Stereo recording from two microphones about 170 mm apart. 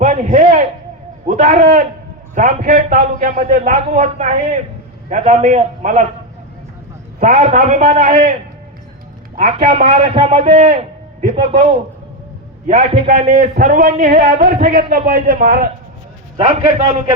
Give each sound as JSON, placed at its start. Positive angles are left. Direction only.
{"t": 0.0, "sound": "a sound", "side_deg": -50}
{"t": 1.3, "sound": "a man's voice", "side_deg": -40}
{"t": 7.2, "sound": "a man's voice", "side_deg": -45}
{"t": 9.7, "sound": "a man's voice", "side_deg": -40}
{"t": 12.6, "sound": "a man's voice", "side_deg": -45}
{"t": 16.4, "sound": "a man's voice", "side_deg": -45}